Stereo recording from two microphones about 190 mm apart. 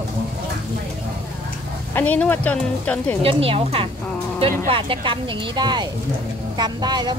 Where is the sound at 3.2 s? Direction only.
30° right (ahead or behind).